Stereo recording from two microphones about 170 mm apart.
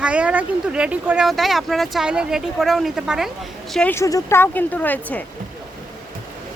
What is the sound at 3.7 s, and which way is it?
Speech, 10° left (ahead or behind).